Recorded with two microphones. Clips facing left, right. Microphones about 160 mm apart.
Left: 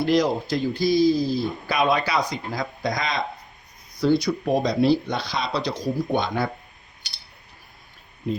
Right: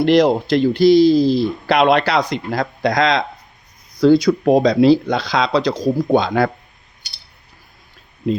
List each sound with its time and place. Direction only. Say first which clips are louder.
0.0 s speech: right 7 dB; 65° right (ahead or behind); by 6.5 s 90° right